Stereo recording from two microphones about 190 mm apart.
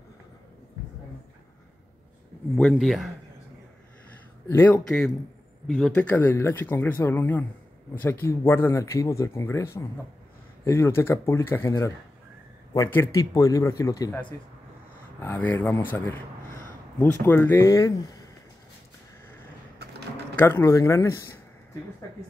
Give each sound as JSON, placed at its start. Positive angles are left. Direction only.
{"t": 2.5, "sound": "speech", "side_deg": 0}
{"t": 4.5, "sound": "speech", "side_deg": 10}
{"t": 20.3, "sound": "speech", "side_deg": 15}